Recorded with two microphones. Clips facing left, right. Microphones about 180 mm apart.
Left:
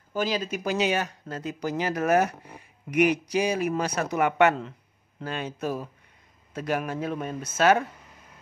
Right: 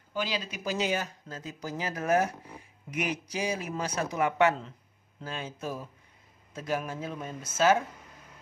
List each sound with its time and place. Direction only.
0.1 s speech: 45° left (ahead or behind)
0.7 s speech: 70° left (ahead or behind)